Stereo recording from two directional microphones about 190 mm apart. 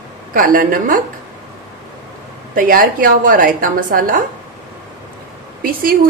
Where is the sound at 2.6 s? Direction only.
50° right (ahead or behind).